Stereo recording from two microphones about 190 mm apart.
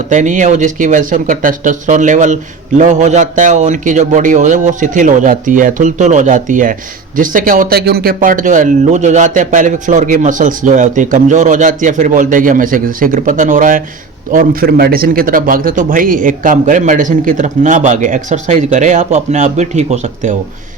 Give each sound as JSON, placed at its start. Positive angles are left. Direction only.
{"t": 0.1, "sound": "speech", "side_deg": -40}